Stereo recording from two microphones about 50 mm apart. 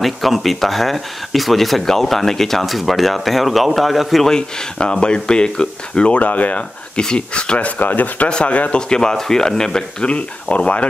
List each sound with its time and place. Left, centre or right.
0.0 s speech: centre
4.3 s speech: centre
7.0 s speech: centre
7.8 s speech: left
8.3 s speech: left